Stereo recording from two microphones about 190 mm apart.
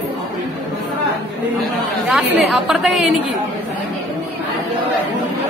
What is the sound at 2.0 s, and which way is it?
Speech, centre (ahead or behind).